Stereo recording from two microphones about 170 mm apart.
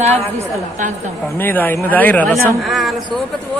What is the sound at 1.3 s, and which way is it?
A woman's voice, 10° left (ahead or behind).